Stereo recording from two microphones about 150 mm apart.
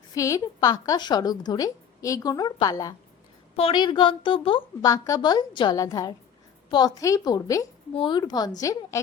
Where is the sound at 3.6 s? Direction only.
35° left (ahead or behind).